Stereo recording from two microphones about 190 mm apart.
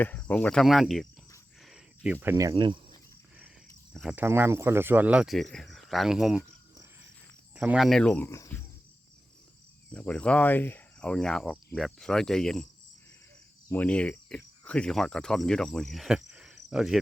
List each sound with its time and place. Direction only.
0.0 s speech: 10° left (ahead or behind)
2.2 s speech: 15° right (ahead or behind)
3.9 s speech: 5° right (ahead or behind)
7.5 s speech: 5° right (ahead or behind); by 8.6 s 15° left (ahead or behind)
9.9 s speech: 5° left (ahead or behind)
13.7 s cricket: 10° left (ahead or behind)